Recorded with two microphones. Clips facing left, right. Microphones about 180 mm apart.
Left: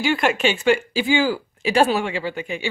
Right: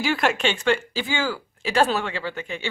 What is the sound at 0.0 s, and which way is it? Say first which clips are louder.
Speech: left 3 dB; centre (ahead or behind).